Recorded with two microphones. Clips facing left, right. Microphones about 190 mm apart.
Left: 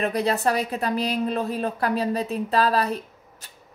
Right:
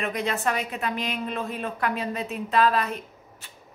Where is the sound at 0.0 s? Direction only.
35° left (ahead or behind).